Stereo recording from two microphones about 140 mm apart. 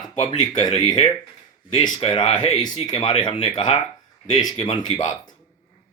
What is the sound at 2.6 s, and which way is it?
Speech, 30° left (ahead or behind).